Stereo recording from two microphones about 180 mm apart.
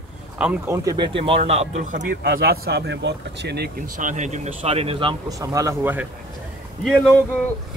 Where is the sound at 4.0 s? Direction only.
45° right (ahead or behind).